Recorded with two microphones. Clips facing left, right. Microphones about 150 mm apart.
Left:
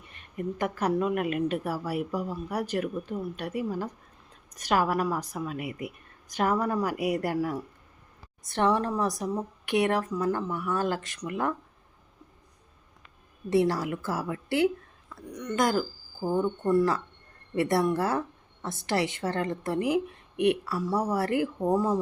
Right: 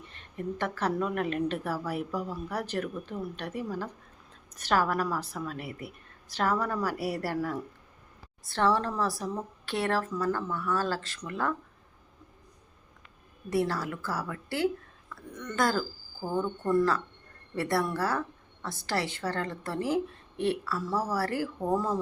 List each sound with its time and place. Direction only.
0.1 s a woman's voice: 10° left (ahead or behind)
13.5 s a woman's voice: 20° left (ahead or behind)